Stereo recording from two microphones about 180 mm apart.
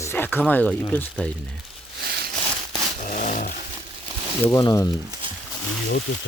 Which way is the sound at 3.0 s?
45° left (ahead or behind).